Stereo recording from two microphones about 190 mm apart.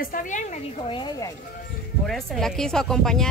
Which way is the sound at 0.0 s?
45° left (ahead or behind).